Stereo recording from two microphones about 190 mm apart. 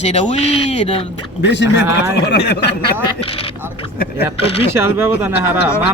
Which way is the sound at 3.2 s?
30° left (ahead or behind).